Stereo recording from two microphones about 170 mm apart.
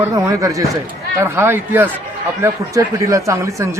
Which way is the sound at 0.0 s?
20° right (ahead or behind).